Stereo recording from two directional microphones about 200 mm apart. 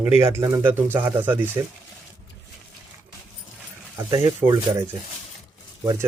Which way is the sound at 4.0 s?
15° right (ahead or behind).